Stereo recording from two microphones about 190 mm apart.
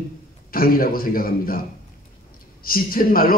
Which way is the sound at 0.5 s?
50° left (ahead or behind).